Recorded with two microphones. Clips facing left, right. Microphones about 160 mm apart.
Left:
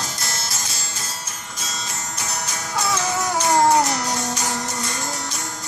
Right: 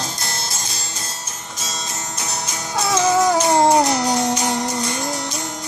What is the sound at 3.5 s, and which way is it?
Music, 20° right (ahead or behind).